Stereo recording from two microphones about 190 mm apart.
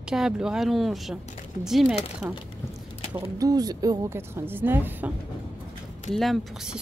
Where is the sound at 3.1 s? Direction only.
20° right (ahead or behind).